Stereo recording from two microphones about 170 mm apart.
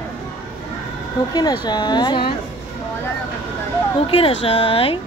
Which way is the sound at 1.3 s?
25° left (ahead or behind).